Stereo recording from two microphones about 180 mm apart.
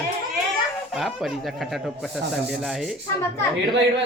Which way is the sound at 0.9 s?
Centre (ahead or behind).